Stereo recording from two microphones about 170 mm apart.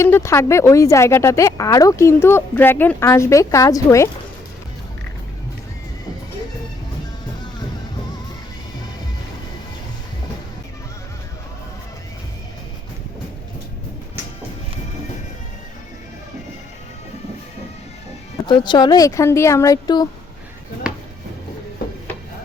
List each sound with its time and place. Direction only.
0.0 s a woman's voice: 15° left (ahead or behind)
18.4 s speech: 25° left (ahead or behind)